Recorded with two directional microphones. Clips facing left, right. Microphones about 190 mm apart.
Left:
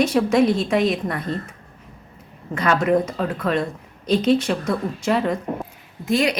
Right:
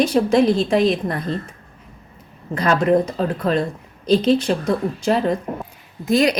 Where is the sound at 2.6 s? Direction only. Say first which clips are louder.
Right 2 dB; 35° right (ahead or behind).